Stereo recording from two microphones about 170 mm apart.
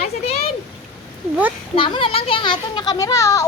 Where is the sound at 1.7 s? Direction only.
30° left (ahead or behind).